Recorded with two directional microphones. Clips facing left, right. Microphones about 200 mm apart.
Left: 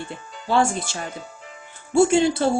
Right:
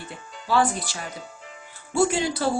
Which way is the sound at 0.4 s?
25° left (ahead or behind).